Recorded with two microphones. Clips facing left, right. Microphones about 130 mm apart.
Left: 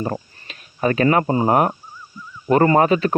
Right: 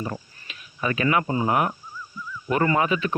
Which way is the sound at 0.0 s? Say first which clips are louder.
Left 6 dB; 40° left (ahead or behind).